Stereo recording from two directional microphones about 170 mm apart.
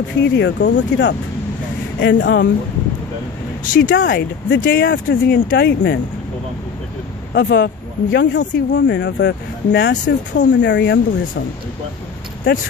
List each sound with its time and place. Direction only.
0.2 s speech: 90° left
3.6 s speech: 50° left (ahead or behind)
3.9 s speech: 90° left; by 5.9 s 75° left (ahead or behind)
7.3 s speech: 85° left